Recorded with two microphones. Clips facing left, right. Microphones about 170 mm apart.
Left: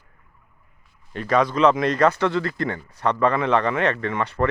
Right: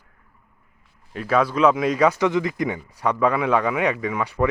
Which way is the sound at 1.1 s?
5° right (ahead or behind).